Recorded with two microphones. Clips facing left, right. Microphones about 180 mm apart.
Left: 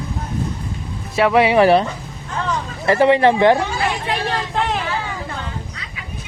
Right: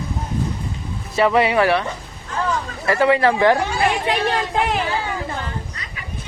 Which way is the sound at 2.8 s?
25° left (ahead or behind).